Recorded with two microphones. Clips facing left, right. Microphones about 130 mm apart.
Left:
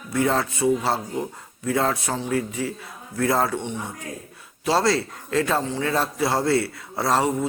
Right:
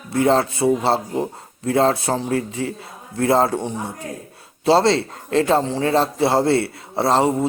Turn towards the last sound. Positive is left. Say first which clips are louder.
# right 4 dB
turn(degrees=-25)  # may be behind; listen again after turning